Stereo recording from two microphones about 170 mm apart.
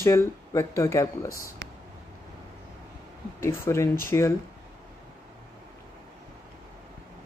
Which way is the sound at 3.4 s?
15° left (ahead or behind).